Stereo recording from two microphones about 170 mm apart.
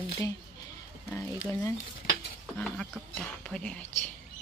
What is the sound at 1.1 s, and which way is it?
Speech, 15° left (ahead or behind).